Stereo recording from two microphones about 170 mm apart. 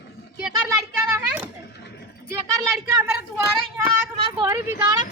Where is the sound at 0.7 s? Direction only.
10° right (ahead or behind).